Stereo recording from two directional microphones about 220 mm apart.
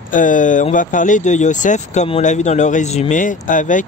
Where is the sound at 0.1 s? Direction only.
35° left (ahead or behind).